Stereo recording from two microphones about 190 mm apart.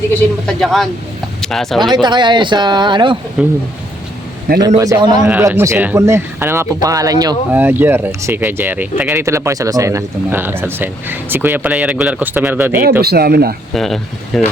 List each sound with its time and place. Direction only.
0.4 s speech: centre (ahead or behind)
1.8 s speech: 25° right (ahead or behind)
3.4 s speech: 5° right (ahead or behind)
4.8 s speech: 20° right (ahead or behind)
13.0 s speech: 55° right (ahead or behind)
13.7 s speech: centre (ahead or behind)